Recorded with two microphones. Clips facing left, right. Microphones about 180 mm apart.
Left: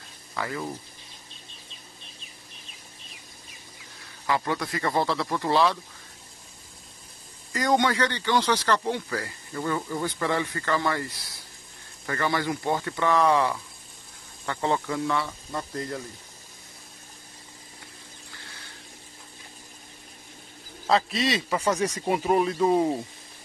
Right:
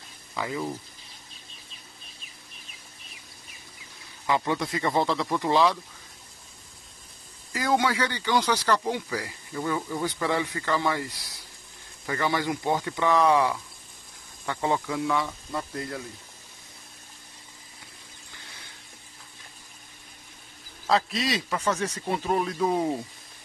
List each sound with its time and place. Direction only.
0.3 s speech: 10° right (ahead or behind)
4.3 s speech: 20° right (ahead or behind)
7.5 s speech: 5° right (ahead or behind)
20.8 s a man's voice: centre (ahead or behind)
21.5 s speech: 10° left (ahead or behind)